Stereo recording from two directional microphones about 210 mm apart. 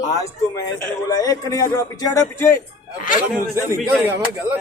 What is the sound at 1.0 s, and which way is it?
A man's voice, 15° left (ahead or behind).